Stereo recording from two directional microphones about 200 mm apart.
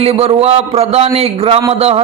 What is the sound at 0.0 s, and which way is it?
A man's voice, 30° right (ahead or behind).